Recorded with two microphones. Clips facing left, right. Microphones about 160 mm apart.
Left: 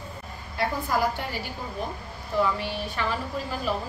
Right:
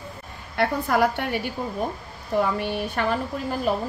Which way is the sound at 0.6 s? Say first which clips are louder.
Right 5 dB; 65° right (ahead or behind).